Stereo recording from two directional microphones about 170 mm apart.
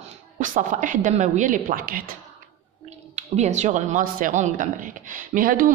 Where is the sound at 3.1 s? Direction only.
40° right (ahead or behind).